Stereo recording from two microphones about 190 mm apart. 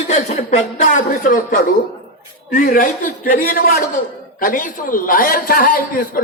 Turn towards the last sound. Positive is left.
turn(degrees=50)  # may be behind; listen again after turning